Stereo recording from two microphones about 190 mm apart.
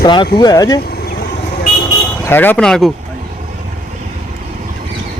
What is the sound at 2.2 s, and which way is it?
Speech, 10° left (ahead or behind).